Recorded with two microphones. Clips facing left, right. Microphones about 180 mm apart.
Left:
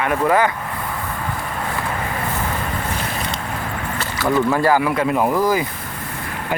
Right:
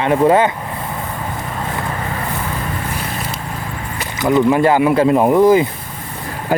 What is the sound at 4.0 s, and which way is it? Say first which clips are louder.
Speech: right 4 dB; 20° right (ahead or behind).